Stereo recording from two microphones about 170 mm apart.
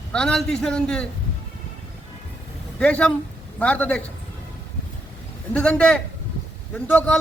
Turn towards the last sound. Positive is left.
turn(degrees=10)  # may be behind; listen again after turning